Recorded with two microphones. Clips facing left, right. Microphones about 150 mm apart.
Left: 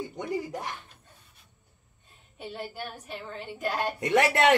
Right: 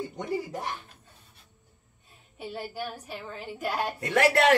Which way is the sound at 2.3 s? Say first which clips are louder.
Right 2 dB; 5° right (ahead or behind).